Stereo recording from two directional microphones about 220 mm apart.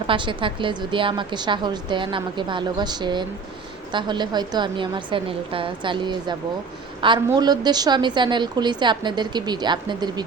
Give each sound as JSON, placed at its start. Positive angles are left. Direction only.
{"t": 0.1, "sound": "a woman's voice", "side_deg": -20}